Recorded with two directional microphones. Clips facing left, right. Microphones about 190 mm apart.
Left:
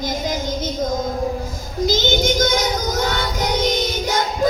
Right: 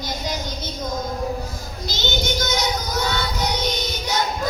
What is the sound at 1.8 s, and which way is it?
Child singing, 50° left (ahead or behind).